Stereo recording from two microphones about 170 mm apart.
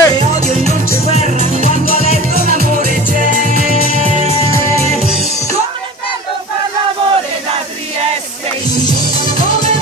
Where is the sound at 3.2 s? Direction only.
50° right (ahead or behind).